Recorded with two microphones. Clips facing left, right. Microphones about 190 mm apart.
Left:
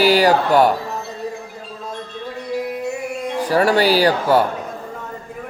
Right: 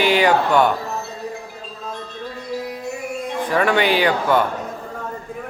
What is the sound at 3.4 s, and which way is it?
Speech, 40° left (ahead or behind).